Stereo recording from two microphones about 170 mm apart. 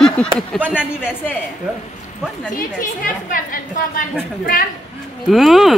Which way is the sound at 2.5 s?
55° left (ahead or behind).